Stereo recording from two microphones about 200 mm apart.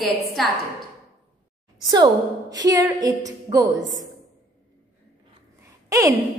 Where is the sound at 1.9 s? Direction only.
20° right (ahead or behind).